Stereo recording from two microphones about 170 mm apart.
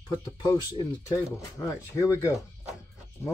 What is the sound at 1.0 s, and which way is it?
Speech, 20° left (ahead or behind).